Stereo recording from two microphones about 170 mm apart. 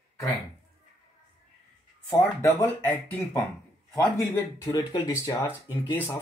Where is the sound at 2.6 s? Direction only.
10° left (ahead or behind).